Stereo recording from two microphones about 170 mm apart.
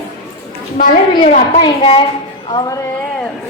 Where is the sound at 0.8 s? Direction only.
50° left (ahead or behind).